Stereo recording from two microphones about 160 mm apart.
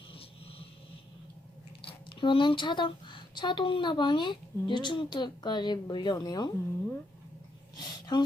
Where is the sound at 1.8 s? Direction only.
35° left (ahead or behind).